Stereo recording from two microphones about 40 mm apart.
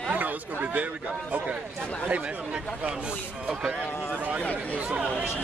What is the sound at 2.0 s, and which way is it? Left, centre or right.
Speech, right.